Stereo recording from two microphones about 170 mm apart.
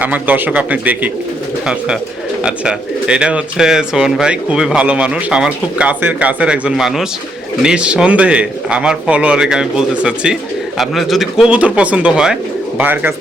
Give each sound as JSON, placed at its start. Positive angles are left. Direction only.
{"t": 0.0, "sound": "a man's voice", "side_deg": -10}
{"t": 2.4, "sound": "a man's voice", "side_deg": -5}